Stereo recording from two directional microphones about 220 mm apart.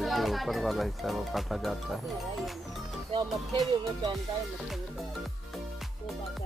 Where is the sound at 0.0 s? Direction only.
Centre (ahead or behind).